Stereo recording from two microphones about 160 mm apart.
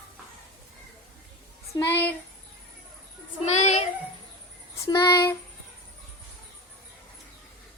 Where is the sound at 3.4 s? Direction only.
45° left (ahead or behind).